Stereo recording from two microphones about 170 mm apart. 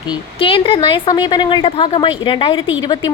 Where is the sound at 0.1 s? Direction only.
30° left (ahead or behind).